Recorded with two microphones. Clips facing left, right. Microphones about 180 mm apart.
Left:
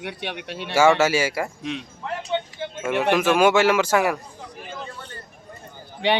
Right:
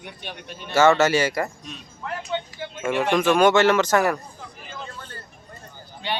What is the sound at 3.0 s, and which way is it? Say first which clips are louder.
Speech: even; 5° left (ahead or behind).